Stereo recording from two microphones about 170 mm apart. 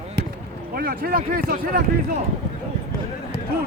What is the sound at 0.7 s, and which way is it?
Speech, 60° right (ahead or behind).